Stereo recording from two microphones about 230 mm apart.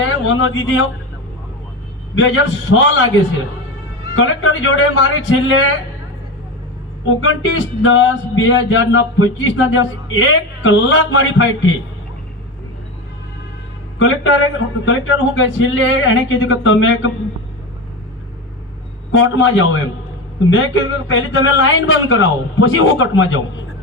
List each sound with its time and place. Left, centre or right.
0.0 s music: left
2.1 s music: left
4.1 s music: left
7.1 s music: left
14.0 s music: left
19.1 s music: left